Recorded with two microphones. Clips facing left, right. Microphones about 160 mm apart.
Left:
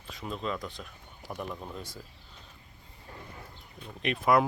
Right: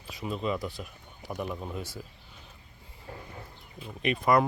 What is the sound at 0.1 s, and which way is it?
Speech, 5° right (ahead or behind).